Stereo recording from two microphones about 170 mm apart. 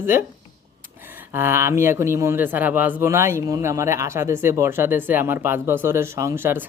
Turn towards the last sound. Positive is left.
turn(degrees=-15)  # may be behind; listen again after turning